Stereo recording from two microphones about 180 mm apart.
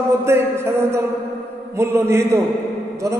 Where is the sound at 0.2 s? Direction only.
15° right (ahead or behind).